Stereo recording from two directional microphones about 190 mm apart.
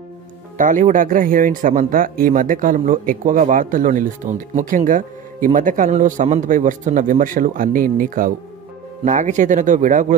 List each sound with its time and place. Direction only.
0.6 s a man's voice: 40° right (ahead or behind)